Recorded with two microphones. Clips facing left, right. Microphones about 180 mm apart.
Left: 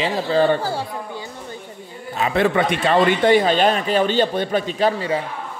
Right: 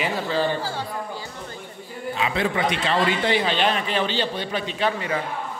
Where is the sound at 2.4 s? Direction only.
55° left (ahead or behind); by 5.2 s 30° left (ahead or behind).